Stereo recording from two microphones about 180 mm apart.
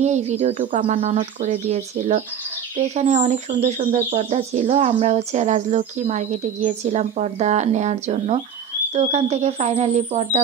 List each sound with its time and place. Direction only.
0.0 s speech: 40° right (ahead or behind)